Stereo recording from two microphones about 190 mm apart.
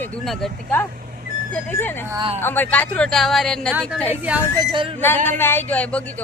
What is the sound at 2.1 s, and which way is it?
Speech, 25° right (ahead or behind).